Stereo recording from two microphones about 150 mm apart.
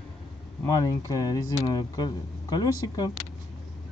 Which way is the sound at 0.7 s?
25° left (ahead or behind).